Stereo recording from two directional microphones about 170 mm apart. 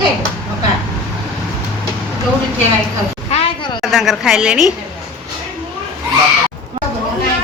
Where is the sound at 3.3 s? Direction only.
35° left (ahead or behind).